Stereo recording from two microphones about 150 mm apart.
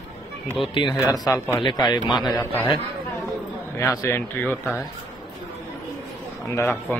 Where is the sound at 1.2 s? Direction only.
20° left (ahead or behind).